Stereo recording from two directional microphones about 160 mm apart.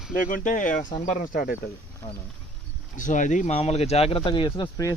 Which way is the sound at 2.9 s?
50° left (ahead or behind).